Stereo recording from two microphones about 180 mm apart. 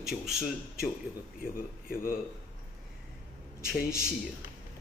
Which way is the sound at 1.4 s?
50° left (ahead or behind).